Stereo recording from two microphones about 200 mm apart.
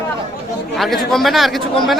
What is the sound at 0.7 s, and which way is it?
Speech, centre (ahead or behind).